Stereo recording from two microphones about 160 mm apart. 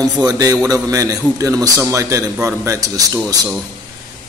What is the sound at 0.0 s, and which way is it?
A man's voice, 20° right (ahead or behind).